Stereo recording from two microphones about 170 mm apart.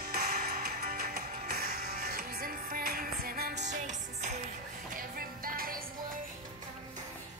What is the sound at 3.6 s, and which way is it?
Music, 45° right (ahead or behind).